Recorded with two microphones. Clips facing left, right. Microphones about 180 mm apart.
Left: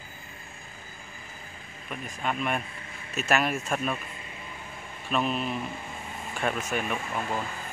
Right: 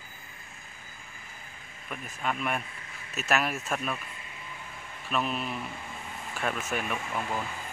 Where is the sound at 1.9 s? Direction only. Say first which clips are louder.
Left 1 dB; centre (ahead or behind).